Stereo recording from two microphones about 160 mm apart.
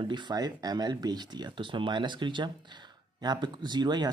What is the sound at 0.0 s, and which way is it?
Speech, 30° right (ahead or behind).